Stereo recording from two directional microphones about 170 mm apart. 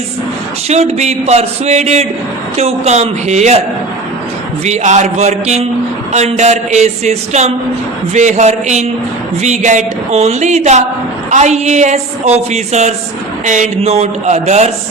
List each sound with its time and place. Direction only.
0.7 s a woman's voice: 40° right (ahead or behind)
4.6 s a woman's voice: 45° right (ahead or behind)